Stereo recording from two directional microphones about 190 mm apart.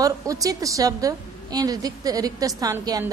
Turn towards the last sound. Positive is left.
turn(degrees=-20)  # may be behind; listen again after turning